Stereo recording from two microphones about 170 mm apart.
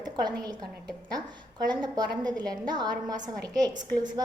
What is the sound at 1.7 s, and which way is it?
A woman's voice, 25° right (ahead or behind).